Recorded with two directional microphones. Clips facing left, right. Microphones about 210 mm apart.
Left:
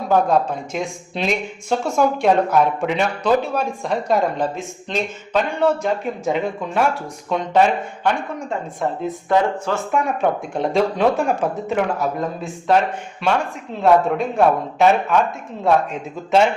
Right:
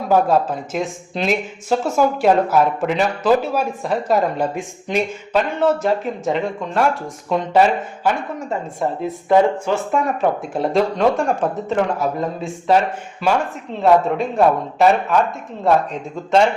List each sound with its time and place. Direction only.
0.1 s speech: 5° right (ahead or behind)
9.9 s speech: centre (ahead or behind)